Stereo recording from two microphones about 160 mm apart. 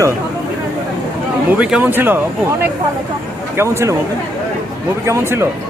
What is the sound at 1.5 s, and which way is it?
Speech, 5° right (ahead or behind).